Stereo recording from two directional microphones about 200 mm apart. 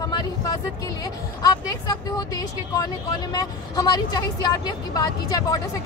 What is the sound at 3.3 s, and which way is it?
Speech, 20° left (ahead or behind).